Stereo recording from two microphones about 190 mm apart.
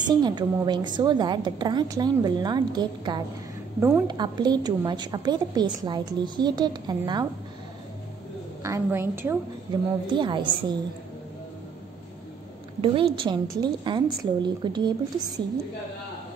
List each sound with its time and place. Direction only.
0.2 s a woman's voice: 25° right (ahead or behind)
8.6 s a woman's voice: 15° right (ahead or behind)
12.8 s a woman's voice: 30° right (ahead or behind)